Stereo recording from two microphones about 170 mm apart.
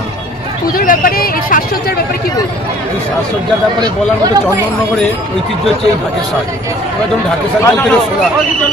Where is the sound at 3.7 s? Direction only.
20° right (ahead or behind).